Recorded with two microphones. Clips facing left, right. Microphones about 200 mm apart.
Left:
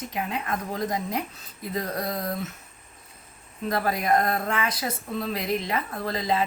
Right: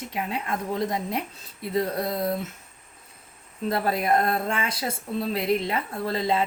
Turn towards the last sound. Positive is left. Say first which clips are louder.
# right 2 dB
turn(degrees=-25)  # may be behind; listen again after turning